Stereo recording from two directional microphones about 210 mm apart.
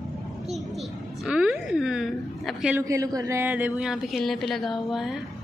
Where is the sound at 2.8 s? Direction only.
15° right (ahead or behind).